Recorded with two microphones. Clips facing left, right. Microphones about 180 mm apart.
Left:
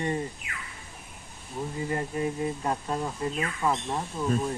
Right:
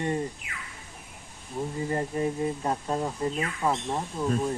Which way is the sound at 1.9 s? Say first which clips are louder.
Right 1 dB; 30° right (ahead or behind).